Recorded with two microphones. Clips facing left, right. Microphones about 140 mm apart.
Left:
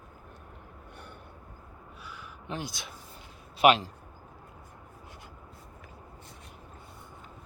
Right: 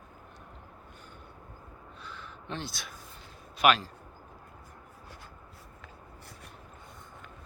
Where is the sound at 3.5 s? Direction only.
25° left (ahead or behind).